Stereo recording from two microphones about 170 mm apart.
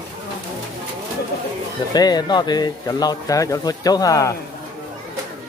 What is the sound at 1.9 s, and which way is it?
Speech, 25° left (ahead or behind).